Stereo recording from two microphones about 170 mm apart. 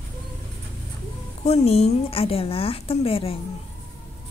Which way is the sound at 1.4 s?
40° left (ahead or behind).